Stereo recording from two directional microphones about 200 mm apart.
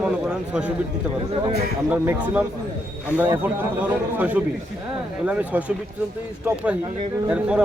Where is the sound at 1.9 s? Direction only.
5° right (ahead or behind).